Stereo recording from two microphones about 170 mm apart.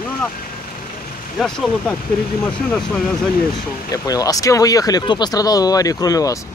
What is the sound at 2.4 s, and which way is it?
Speech, 5° left (ahead or behind).